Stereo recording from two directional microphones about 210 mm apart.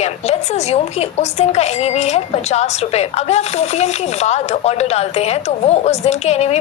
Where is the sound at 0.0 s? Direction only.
30° left (ahead or behind).